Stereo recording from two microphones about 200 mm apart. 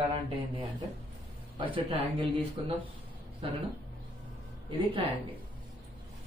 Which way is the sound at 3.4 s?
25° right (ahead or behind).